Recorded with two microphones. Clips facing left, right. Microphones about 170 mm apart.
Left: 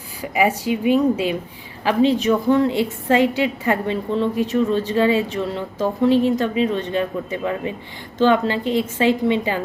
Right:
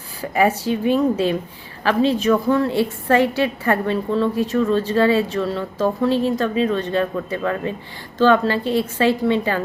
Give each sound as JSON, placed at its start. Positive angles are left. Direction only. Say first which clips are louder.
{"t": 0.2, "sound": "a woman's voice", "louder": "right 1 dB", "side_deg": 10}